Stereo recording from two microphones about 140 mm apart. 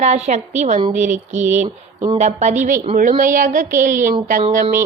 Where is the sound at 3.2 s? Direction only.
70° right (ahead or behind).